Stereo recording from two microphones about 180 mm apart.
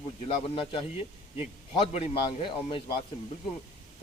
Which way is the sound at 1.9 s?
35° left (ahead or behind).